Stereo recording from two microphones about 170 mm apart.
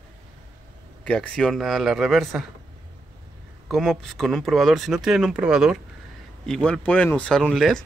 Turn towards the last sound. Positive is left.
turn(degrees=5)  # may be behind; listen again after turning